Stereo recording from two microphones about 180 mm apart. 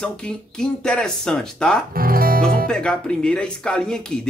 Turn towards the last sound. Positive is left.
turn(degrees=5)  # may be behind; listen again after turning